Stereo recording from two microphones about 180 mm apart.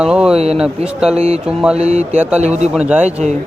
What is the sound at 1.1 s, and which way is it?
Mantra, 35° right (ahead or behind).